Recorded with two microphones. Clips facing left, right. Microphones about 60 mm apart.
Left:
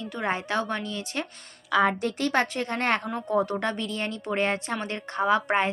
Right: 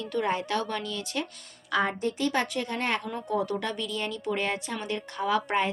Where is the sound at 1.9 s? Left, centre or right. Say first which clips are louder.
Left 1 dB; left.